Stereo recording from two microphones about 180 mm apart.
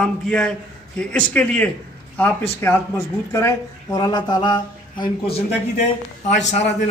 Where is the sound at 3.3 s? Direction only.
20° left (ahead or behind); by 6.6 s 40° left (ahead or behind).